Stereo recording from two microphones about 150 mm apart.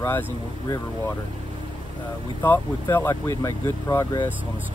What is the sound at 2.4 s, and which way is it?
Speech, 15° left (ahead or behind).